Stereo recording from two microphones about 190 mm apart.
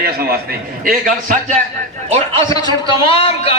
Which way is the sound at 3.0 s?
30° left (ahead or behind).